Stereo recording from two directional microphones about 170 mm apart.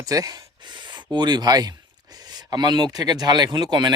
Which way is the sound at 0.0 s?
20° right (ahead or behind).